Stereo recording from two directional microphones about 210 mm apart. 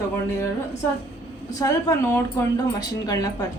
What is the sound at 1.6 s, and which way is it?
A woman's voice, 15° left (ahead or behind).